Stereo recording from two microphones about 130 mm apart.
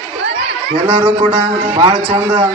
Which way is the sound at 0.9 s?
35° right (ahead or behind).